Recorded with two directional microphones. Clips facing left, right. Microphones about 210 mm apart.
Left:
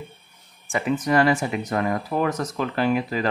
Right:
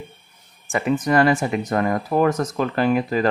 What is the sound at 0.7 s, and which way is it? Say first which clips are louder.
Speech: right 2 dB; 50° right (ahead or behind).